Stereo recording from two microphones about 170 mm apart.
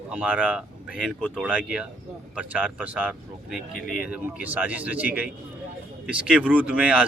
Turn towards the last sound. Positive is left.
turn(degrees=-5)  # may be behind; listen again after turning